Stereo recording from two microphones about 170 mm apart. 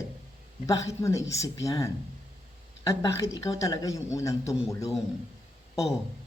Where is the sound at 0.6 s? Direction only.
20° left (ahead or behind).